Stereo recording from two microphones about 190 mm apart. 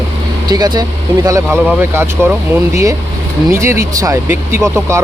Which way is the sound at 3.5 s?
15° right (ahead or behind).